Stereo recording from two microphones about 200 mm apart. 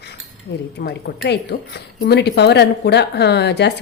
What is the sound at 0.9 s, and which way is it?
A woman's voice, 55° left (ahead or behind).